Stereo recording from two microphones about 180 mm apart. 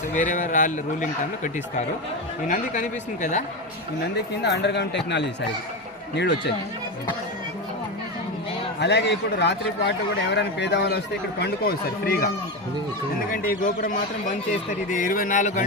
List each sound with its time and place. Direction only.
0.2 s speech: 45° left (ahead or behind)
2.5 s speech: 45° left (ahead or behind)
4.4 s a man's voice: 70° left (ahead or behind)
8.8 s a man's voice: 70° left (ahead or behind)
13.3 s speech: 50° left (ahead or behind)